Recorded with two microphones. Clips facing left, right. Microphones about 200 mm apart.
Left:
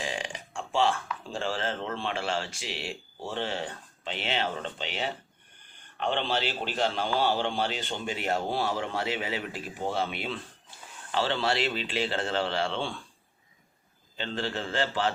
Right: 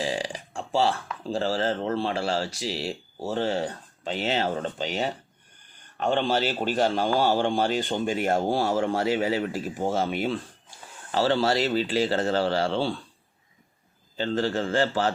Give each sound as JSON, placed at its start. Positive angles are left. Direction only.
{"t": 0.0, "sound": "a man's voice", "side_deg": -35}
{"t": 14.2, "sound": "a man's voice", "side_deg": -45}